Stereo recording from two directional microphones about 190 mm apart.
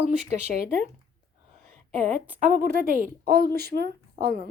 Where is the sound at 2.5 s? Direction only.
45° right (ahead or behind).